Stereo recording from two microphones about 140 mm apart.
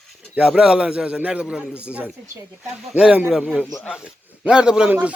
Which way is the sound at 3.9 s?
5° right (ahead or behind).